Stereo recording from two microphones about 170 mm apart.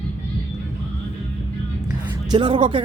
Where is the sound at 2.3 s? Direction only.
30° right (ahead or behind).